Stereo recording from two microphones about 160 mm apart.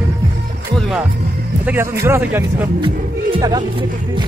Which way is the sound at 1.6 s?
15° right (ahead or behind).